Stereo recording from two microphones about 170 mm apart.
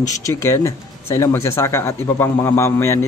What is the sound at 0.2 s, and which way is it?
A man's voice, 15° left (ahead or behind).